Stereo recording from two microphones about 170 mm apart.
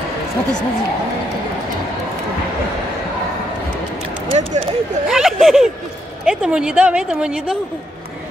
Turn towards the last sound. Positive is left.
turn(degrees=-5)  # may be behind; listen again after turning